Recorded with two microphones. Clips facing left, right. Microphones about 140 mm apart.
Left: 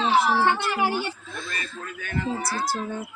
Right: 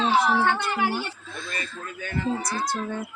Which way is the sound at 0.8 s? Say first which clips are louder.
Left 2 dB; 15° left (ahead or behind).